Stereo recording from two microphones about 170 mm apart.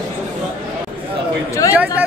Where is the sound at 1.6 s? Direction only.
20° left (ahead or behind).